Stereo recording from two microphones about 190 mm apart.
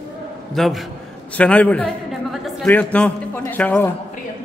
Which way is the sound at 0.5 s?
Centre (ahead or behind).